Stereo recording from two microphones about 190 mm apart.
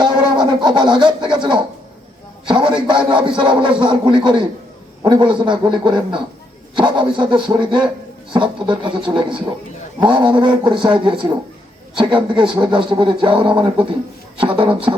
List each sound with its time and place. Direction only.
0.0 s speech: 25° right (ahead or behind)